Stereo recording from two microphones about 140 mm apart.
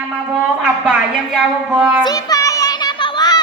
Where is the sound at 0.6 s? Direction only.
5° right (ahead or behind).